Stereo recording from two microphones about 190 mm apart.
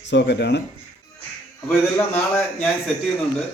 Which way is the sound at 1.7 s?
10° left (ahead or behind).